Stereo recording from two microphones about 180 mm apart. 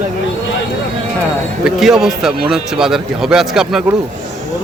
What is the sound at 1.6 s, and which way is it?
Speech, centre (ahead or behind).